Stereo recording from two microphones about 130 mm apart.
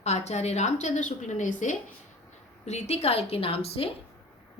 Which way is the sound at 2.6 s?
55° left (ahead or behind).